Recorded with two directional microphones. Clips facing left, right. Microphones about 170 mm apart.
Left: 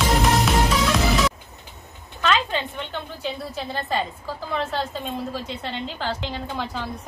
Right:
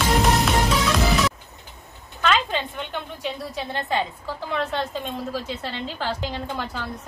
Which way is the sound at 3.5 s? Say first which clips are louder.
Right 1 dB; 15° right (ahead or behind).